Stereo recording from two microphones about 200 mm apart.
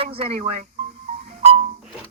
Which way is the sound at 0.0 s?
30° right (ahead or behind).